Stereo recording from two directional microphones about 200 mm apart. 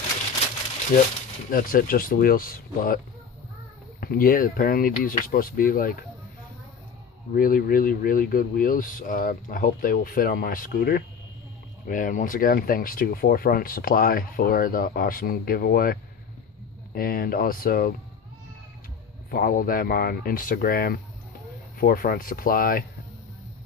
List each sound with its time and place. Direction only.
1.5 s speech: 45° left (ahead or behind)
4.0 s speech: 45° left (ahead or behind)
7.3 s speech: 45° left (ahead or behind)
19.3 s speech: 45° left (ahead or behind)